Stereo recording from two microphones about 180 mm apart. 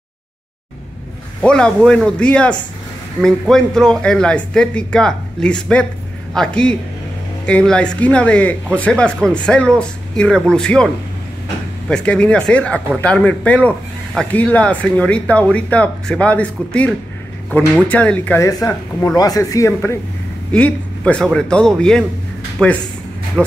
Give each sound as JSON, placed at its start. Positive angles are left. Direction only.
{"t": 1.4, "sound": "speech", "side_deg": 5}
{"t": 11.9, "sound": "speech", "side_deg": 5}